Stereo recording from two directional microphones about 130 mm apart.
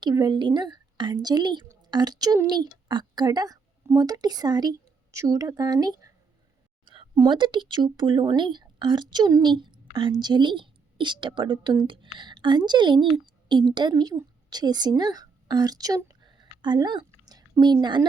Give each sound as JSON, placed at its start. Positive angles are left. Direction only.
{"t": 0.0, "sound": "a woman's voice", "side_deg": -35}
{"t": 6.8, "sound": "a sound", "side_deg": -40}
{"t": 7.2, "sound": "a woman's voice", "side_deg": -35}